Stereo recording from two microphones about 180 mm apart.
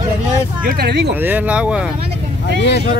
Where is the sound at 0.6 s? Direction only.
60° right (ahead or behind).